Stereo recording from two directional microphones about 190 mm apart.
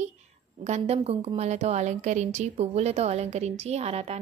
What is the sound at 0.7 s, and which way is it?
A woman's voice, 35° right (ahead or behind).